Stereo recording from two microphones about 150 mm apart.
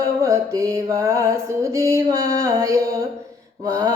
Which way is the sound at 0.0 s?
20° right (ahead or behind).